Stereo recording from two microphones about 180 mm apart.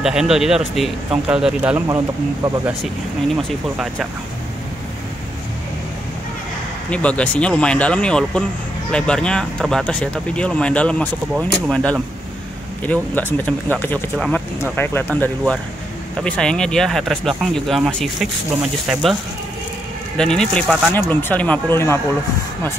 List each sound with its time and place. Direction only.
0.0 s speech: 5° right (ahead or behind)
2.4 s speech: 20° right (ahead or behind)
3.4 s speech: 5° right (ahead or behind)
6.9 s speech: 5° left (ahead or behind)
20.2 s speech: 5° left (ahead or behind)